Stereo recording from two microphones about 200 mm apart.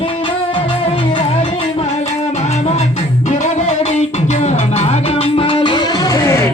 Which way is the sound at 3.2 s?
35° left (ahead or behind).